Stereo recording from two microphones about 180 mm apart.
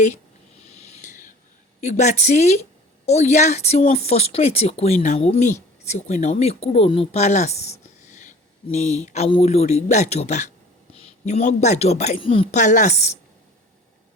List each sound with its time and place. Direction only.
1.8 s a man's voice: 40° left (ahead or behind)
12.5 s a woman's voice: 45° left (ahead or behind)